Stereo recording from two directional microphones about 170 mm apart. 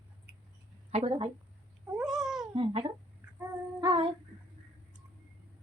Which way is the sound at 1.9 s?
5° right (ahead or behind).